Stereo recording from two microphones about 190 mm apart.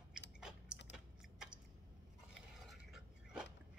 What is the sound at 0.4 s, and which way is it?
Chewing, 5° right (ahead or behind).